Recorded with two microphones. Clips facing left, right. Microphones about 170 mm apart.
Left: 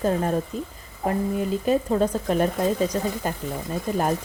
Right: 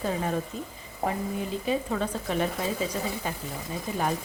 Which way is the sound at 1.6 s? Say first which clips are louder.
Left 7 dB; 45° left (ahead or behind).